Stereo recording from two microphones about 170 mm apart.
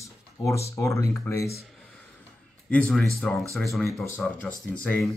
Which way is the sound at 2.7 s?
5° left (ahead or behind).